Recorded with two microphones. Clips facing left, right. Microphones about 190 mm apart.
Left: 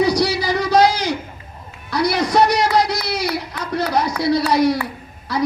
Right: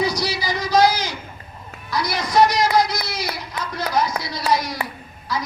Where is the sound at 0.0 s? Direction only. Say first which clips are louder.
Left 6 dB; 65° left (ahead or behind).